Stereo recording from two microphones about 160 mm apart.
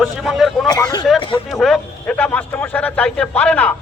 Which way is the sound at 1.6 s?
5° left (ahead or behind).